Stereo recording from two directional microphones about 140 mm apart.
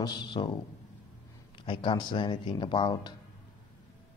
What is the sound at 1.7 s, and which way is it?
Speech, 35° left (ahead or behind).